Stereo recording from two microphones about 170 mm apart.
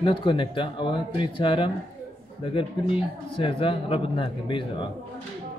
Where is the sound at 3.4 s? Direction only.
30° left (ahead or behind).